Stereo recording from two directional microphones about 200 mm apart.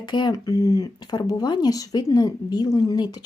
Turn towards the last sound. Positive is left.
turn(degrees=20)  # may be behind; listen again after turning